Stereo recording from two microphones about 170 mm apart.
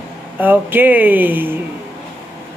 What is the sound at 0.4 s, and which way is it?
A man's voice, 10° right (ahead or behind).